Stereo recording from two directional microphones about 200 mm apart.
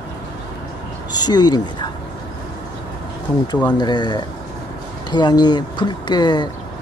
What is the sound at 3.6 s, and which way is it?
Speech, 20° left (ahead or behind).